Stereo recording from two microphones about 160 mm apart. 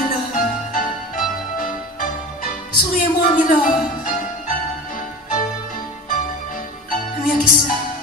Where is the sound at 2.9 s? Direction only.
55° left (ahead or behind).